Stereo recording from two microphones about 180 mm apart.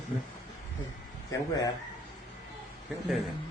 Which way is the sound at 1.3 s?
20° left (ahead or behind).